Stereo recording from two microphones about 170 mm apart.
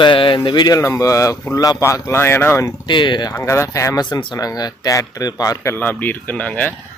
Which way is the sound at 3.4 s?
15° left (ahead or behind).